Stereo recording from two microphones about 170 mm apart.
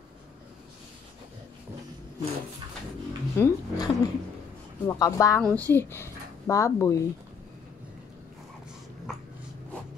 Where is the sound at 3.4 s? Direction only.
20° left (ahead or behind).